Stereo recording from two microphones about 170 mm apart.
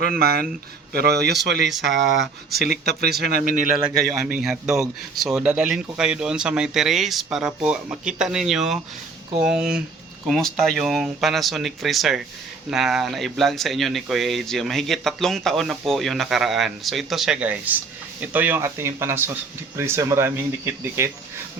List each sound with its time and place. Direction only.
0.0 s a man's voice: 60° right (ahead or behind); by 1.6 s 85° right
2.5 s speech: 65° right (ahead or behind); by 3.8 s 50° right (ahead or behind)
3.8 s speech: 5° right (ahead or behind)